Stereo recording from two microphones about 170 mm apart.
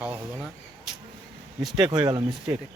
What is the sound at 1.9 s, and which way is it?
Speech, 25° right (ahead or behind).